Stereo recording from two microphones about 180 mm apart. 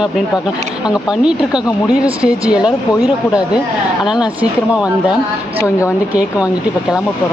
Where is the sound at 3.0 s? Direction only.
20° left (ahead or behind).